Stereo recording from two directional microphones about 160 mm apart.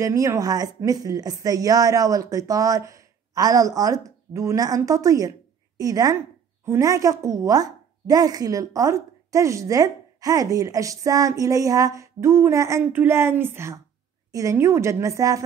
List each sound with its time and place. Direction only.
0.0 s a woman's voice: 20° right (ahead or behind)